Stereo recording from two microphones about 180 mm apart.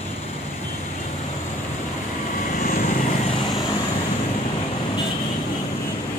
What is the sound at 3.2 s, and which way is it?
Vehicle, 30° left (ahead or behind).